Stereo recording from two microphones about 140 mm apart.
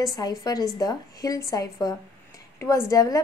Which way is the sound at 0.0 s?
25° left (ahead or behind).